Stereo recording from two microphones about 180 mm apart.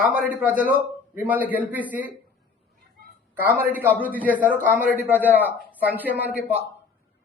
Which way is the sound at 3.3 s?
10° right (ahead or behind).